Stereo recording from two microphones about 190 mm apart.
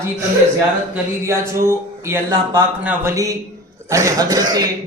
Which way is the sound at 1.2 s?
15° right (ahead or behind).